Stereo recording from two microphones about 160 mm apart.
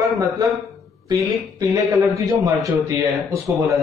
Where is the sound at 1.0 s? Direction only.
20° right (ahead or behind).